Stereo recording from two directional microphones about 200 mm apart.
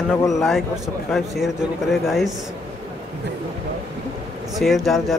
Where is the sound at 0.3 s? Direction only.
Centre (ahead or behind).